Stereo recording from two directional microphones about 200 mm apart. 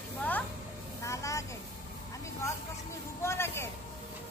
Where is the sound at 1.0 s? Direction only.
15° left (ahead or behind).